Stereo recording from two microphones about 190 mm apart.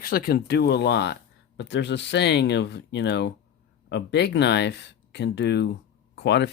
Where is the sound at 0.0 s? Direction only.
50° left (ahead or behind).